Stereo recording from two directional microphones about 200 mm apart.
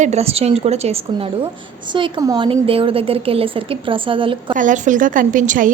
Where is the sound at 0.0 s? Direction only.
35° right (ahead or behind).